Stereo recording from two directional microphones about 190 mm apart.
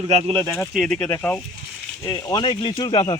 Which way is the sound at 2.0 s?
20° left (ahead or behind).